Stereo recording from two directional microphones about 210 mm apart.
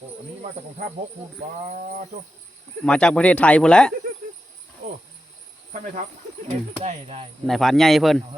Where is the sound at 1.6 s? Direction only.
35° right (ahead or behind).